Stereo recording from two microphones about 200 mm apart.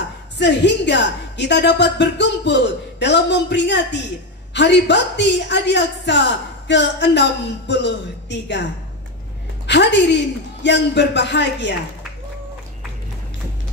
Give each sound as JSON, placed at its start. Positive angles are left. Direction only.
{"t": 0.4, "sound": "a woman's voice", "side_deg": 60}
{"t": 9.7, "sound": "a woman's voice", "side_deg": 60}